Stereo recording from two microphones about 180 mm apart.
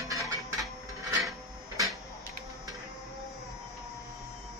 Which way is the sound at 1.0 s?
20° right (ahead or behind).